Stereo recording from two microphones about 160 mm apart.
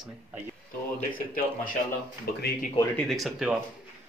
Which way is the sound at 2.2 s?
75° left (ahead or behind).